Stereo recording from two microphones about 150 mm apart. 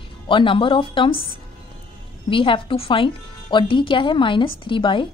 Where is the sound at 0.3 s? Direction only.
35° left (ahead or behind).